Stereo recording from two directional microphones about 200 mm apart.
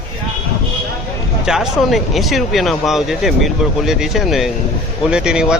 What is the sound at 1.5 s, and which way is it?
Speech, centre (ahead or behind).